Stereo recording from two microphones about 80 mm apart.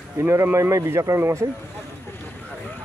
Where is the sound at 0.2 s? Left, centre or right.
Right.